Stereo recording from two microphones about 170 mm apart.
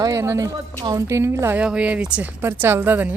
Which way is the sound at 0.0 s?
20° right (ahead or behind).